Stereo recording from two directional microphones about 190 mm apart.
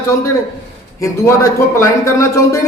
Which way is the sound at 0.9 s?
15° left (ahead or behind).